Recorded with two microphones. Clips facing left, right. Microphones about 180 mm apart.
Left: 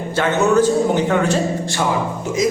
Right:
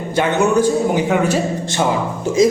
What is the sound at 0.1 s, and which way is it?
Speech, 15° right (ahead or behind).